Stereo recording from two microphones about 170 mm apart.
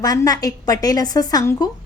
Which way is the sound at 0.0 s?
20° left (ahead or behind).